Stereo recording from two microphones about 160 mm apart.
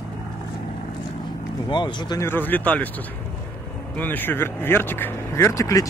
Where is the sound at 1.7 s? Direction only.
30° left (ahead or behind).